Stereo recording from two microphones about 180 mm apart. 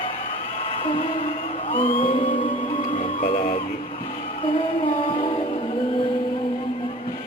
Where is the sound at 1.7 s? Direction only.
30° left (ahead or behind).